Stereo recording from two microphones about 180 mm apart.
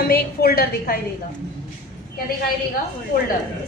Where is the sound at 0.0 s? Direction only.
60° left (ahead or behind).